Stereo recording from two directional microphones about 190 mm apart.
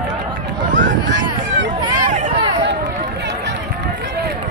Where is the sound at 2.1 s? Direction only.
35° right (ahead or behind).